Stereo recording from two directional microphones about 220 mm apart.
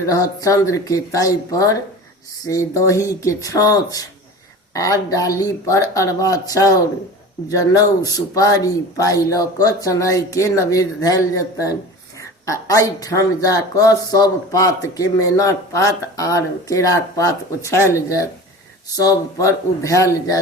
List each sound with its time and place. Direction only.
0.0 s speech: 15° left (ahead or behind)